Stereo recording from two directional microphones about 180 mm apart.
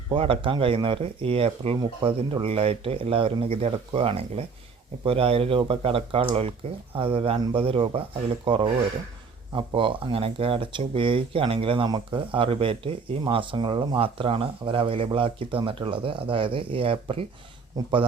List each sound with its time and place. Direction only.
0.1 s speech: 30° right (ahead or behind)